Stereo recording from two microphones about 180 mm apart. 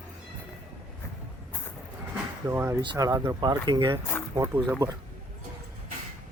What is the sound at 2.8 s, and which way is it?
Speech, 25° right (ahead or behind).